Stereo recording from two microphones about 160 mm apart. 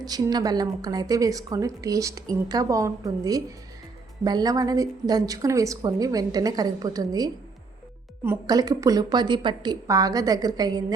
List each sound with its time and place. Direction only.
0.0 s a woman's voice: 25° right (ahead or behind)